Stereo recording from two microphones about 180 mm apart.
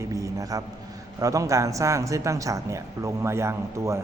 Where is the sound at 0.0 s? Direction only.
15° right (ahead or behind).